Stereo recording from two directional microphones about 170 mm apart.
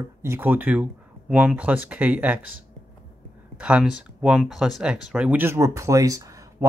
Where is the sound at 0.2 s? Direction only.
15° right (ahead or behind).